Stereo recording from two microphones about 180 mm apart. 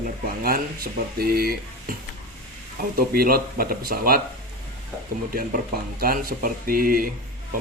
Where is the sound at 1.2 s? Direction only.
55° right (ahead or behind).